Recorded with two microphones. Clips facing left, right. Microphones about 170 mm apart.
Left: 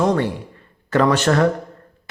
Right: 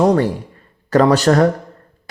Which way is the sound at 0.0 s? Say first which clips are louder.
Right 4 dB; 35° right (ahead or behind).